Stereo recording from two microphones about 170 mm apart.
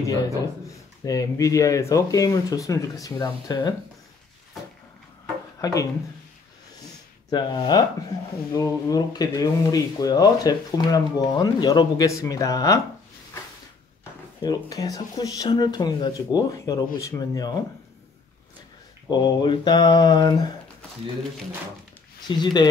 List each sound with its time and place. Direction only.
0.7 s speech: 20° left (ahead or behind)
5.6 s speech: 20° left (ahead or behind)
7.2 s speech: 25° left (ahead or behind)
14.4 s speech: 25° left (ahead or behind)
19.0 s speech: 25° left (ahead or behind)
22.4 s speech: 25° left (ahead or behind)